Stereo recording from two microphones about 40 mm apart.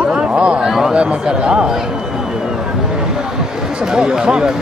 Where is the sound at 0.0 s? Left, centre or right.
Right.